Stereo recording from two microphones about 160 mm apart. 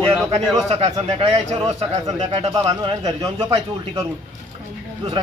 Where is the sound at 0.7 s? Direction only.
40° right (ahead or behind).